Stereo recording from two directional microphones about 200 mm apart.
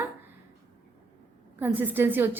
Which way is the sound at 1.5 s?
10° right (ahead or behind).